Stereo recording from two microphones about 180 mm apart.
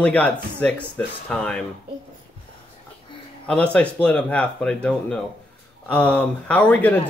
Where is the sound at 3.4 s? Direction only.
5° left (ahead or behind).